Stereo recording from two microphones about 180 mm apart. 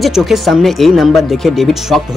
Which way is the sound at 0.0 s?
Centre (ahead or behind).